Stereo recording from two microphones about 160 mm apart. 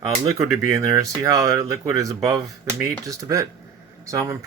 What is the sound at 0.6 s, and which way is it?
Speech, 20° right (ahead or behind).